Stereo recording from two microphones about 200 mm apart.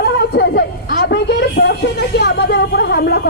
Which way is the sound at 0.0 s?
55° left (ahead or behind).